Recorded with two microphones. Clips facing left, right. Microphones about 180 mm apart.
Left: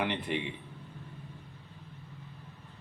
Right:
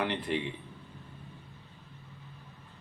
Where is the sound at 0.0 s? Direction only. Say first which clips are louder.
Right 1 dB; 15° left (ahead or behind).